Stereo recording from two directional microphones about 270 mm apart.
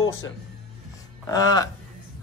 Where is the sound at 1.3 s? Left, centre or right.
Centre.